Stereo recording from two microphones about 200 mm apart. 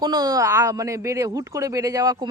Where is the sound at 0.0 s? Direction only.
20° right (ahead or behind).